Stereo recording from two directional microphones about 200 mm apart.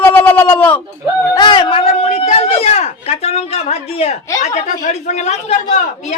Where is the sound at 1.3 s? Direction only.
25° left (ahead or behind).